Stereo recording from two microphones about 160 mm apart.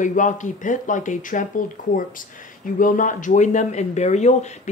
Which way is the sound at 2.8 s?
55° left (ahead or behind).